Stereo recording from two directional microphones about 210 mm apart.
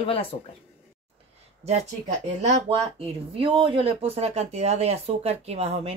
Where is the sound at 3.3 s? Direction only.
25° right (ahead or behind).